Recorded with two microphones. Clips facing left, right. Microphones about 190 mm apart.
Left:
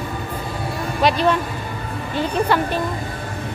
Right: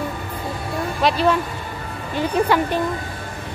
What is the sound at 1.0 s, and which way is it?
A woman's voice, 5° right (ahead or behind).